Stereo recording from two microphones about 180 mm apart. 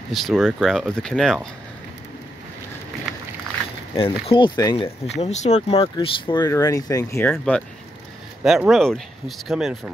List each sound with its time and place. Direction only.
0.1 s speech: centre (ahead or behind)
3.9 s speech: 30° left (ahead or behind)
5.0 s speech: 35° left (ahead or behind); by 9.8 s centre (ahead or behind)